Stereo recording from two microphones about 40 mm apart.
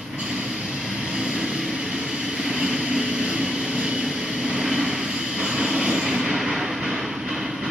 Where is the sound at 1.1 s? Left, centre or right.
Centre.